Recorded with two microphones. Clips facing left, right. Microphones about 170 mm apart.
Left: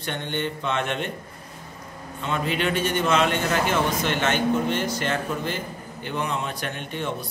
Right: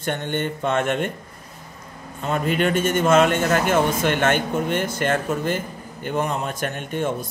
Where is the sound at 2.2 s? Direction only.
45° right (ahead or behind).